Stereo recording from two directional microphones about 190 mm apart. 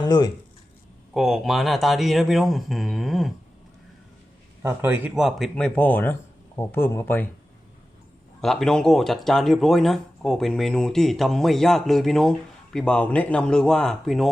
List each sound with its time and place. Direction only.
0.0 s speech: 20° left (ahead or behind)
1.1 s speech: centre (ahead or behind)
4.6 s a man's voice: 10° right (ahead or behind); by 7.3 s 10° left (ahead or behind)
8.4 s speech: centre (ahead or behind)